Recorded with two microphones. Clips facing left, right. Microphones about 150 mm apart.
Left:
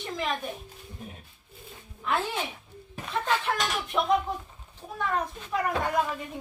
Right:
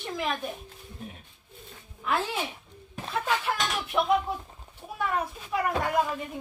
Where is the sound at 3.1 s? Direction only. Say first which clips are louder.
Left 1 dB; 5° right (ahead or behind).